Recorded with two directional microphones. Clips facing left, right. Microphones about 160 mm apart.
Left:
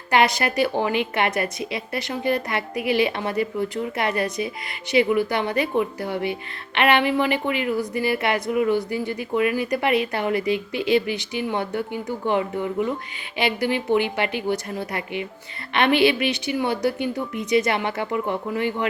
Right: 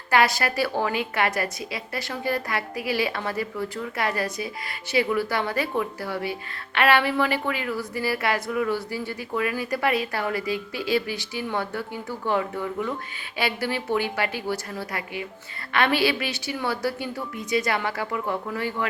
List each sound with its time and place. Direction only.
0.1 s a woman's voice: 20° left (ahead or behind)